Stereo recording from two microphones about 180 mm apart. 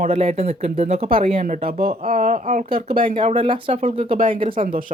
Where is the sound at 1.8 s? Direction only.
50° right (ahead or behind).